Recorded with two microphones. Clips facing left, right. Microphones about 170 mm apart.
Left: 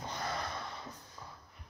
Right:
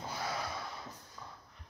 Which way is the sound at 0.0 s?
5° right (ahead or behind).